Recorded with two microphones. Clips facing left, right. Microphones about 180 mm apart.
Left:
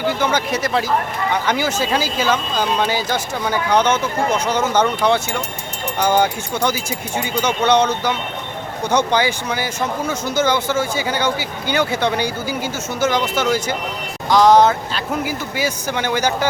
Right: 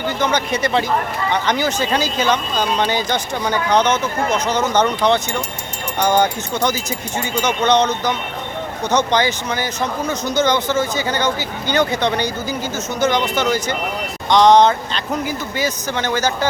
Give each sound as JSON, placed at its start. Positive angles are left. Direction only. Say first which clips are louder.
{"t": 0.1, "sound": "speech", "louder": "even", "side_deg": 10}